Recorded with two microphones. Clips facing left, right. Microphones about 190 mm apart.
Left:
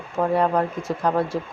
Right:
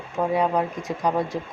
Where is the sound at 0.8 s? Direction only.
15° right (ahead or behind).